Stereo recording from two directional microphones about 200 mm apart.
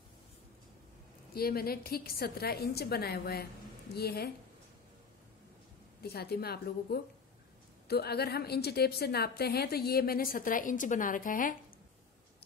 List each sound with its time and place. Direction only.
1.3 s a woman's voice: 50° left (ahead or behind)
6.0 s a woman's voice: 50° left (ahead or behind)